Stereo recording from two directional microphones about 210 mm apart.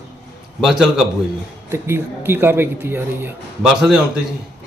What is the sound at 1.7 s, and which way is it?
Speech, 10° right (ahead or behind).